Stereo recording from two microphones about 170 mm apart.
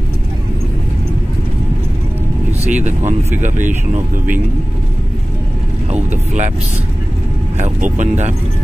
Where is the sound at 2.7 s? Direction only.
45° right (ahead or behind).